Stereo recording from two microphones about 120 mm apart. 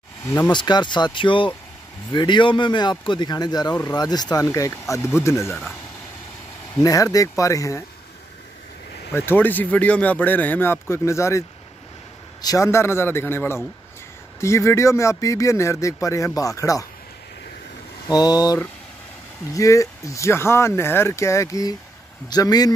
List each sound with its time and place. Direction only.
0.5 s a man's voice: 40° left (ahead or behind); by 5.8 s 20° left (ahead or behind)
6.8 s speech: 30° left (ahead or behind)
9.1 s speech: 20° left (ahead or behind)
18.0 s a man's voice: 35° left (ahead or behind)